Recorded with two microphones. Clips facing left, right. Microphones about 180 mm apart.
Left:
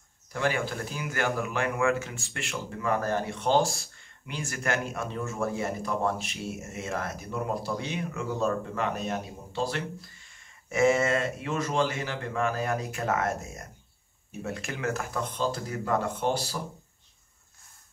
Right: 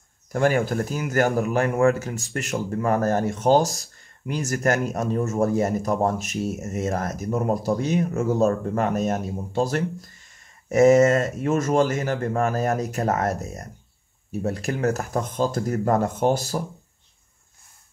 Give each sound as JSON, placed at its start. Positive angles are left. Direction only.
{"t": 0.3, "sound": "speech", "side_deg": -45}